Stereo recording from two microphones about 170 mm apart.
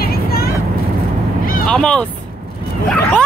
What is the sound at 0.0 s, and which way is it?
Vehicle, 65° left (ahead or behind).